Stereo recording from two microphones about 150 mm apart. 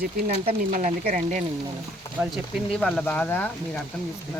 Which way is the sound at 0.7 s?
65° right (ahead or behind).